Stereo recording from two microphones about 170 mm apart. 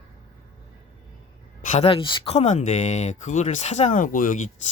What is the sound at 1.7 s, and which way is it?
Speech, 35° left (ahead or behind).